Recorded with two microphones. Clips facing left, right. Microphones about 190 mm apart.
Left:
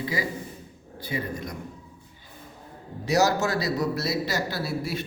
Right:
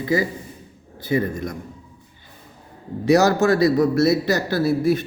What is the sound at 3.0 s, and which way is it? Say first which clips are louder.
Speech: right 7 dB; 55° right (ahead or behind).